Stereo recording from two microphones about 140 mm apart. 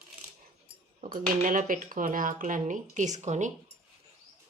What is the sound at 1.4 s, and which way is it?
Speech, 75° right (ahead or behind).